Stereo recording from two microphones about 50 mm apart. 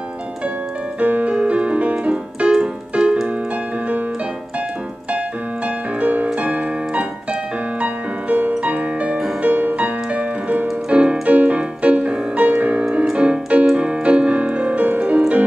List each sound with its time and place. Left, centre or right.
0.9 s music: right
1.3 s keyboard: right
5.9 s music: right